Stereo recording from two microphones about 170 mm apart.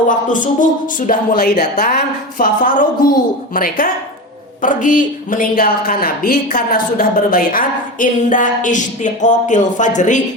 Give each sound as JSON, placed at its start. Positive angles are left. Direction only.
{"t": 0.3, "sound": "a woman's voice", "side_deg": 50}